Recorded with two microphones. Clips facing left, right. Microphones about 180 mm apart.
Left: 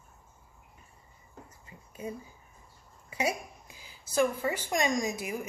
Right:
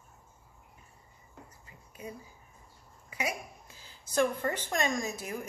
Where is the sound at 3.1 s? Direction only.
30° left (ahead or behind).